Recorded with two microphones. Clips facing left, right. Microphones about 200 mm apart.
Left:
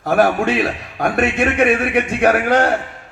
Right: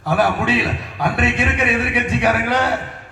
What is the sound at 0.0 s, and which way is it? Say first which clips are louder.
A man's voice: left 3 dB; 50° left (ahead or behind).